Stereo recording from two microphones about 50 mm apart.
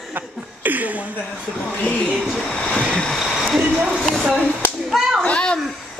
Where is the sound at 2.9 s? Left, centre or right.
Centre.